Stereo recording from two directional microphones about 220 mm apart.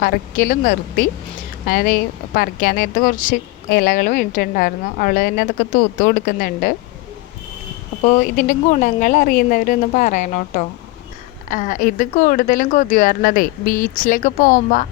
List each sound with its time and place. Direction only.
0.0 s speech: 40° left (ahead or behind)
8.0 s speech: 35° left (ahead or behind)